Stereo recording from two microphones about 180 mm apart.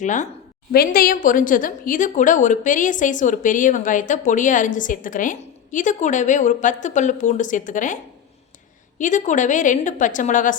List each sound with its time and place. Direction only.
0.0 s a woman's voice: 45° left (ahead or behind)
0.7 s a woman's voice: 55° left (ahead or behind)
9.0 s a woman's voice: 45° left (ahead or behind)